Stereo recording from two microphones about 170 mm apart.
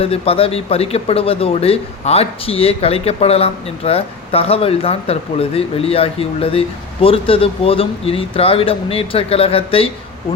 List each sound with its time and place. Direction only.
0.0 s speech: 35° left (ahead or behind)